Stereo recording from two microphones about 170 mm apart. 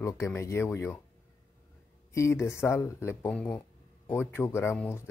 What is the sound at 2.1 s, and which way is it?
Speech, 15° left (ahead or behind).